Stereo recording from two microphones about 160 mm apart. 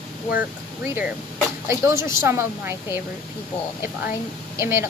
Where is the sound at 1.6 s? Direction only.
20° right (ahead or behind).